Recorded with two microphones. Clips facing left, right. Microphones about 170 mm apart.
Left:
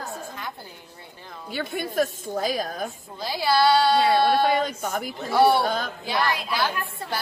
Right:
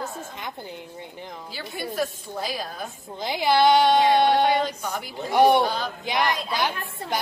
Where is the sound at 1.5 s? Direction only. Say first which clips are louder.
Left 4 dB; 45° left (ahead or behind).